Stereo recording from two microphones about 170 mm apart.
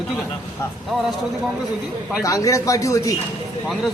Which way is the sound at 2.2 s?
20° left (ahead or behind).